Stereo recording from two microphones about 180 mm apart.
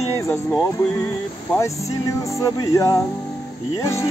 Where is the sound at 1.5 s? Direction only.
15° left (ahead or behind).